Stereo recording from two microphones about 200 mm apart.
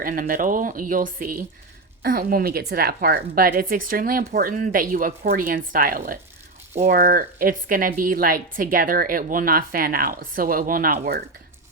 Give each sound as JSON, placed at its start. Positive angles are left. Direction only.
{"t": 0.0, "sound": "a woman's voice", "side_deg": -45}